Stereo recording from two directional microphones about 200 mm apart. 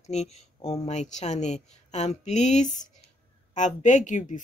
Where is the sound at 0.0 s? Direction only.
35° left (ahead or behind).